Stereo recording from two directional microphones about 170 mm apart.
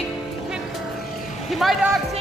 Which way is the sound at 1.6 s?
Centre (ahead or behind).